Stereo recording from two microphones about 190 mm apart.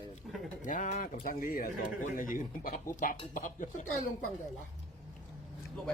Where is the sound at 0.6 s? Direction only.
40° left (ahead or behind).